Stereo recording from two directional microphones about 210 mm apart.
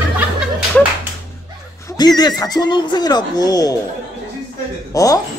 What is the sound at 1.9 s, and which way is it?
Neigh, 20° left (ahead or behind).